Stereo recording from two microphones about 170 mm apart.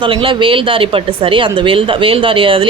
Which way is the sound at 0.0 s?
30° right (ahead or behind).